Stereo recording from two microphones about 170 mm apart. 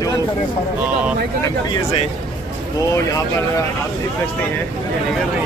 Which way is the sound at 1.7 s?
35° left (ahead or behind).